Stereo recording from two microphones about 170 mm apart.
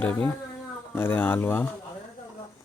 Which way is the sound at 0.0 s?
10° left (ahead or behind).